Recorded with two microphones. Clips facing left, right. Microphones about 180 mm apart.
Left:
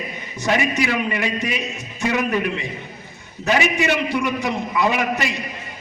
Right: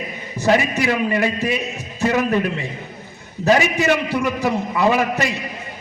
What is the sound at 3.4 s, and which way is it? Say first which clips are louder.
A man's voice: right 3 dB; 40° right (ahead or behind).